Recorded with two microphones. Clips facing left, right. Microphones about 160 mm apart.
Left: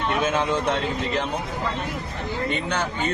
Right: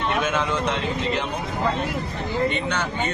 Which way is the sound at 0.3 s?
30° left (ahead or behind).